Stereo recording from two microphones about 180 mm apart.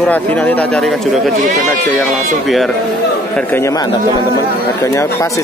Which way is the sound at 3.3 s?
15° left (ahead or behind).